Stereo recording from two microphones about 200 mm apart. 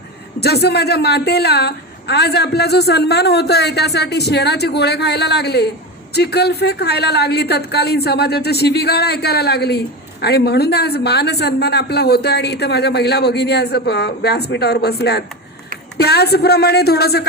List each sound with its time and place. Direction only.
0.3 s a woman's voice: 55° left (ahead or behind)